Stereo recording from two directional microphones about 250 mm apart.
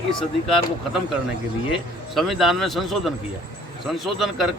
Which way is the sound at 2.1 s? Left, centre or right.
Centre.